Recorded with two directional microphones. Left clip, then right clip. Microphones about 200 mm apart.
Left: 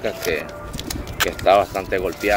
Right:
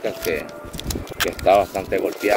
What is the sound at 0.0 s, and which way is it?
Speech, 30° right (ahead or behind).